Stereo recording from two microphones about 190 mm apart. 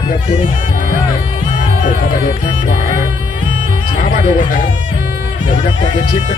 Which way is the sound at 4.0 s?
40° left (ahead or behind).